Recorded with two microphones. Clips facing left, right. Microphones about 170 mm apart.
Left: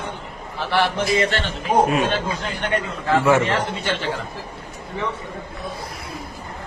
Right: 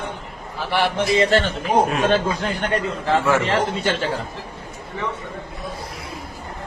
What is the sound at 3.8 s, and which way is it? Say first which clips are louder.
Speech: right 3 dB; 45° right (ahead or behind).